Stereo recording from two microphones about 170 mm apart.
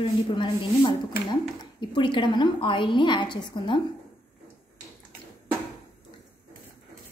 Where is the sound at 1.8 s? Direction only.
25° left (ahead or behind).